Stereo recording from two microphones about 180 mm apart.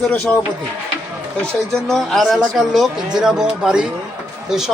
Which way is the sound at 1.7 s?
Centre (ahead or behind).